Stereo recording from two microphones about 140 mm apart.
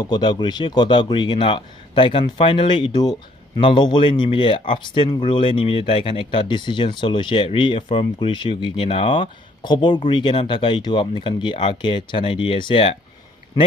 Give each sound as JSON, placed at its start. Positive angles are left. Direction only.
{"t": 0.0, "sound": "speech", "side_deg": 30}